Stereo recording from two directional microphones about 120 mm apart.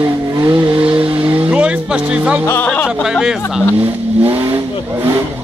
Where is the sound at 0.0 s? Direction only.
30° right (ahead or behind).